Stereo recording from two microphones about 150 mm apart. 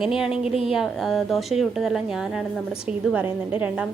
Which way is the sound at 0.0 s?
5° right (ahead or behind).